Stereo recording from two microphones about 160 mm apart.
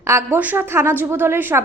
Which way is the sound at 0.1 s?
15° right (ahead or behind).